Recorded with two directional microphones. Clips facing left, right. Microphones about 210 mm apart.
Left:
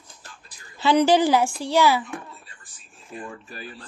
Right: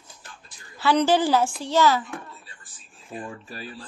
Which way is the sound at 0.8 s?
15° left (ahead or behind).